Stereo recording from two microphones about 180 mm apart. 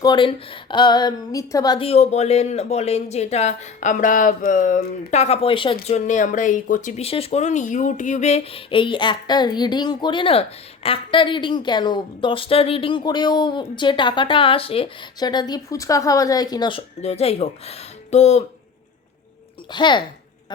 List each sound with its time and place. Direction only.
0.0 s a woman's voice: 25° left (ahead or behind)
1.9 s a woman's voice: 35° left (ahead or behind)
19.7 s a woman's voice: 25° left (ahead or behind)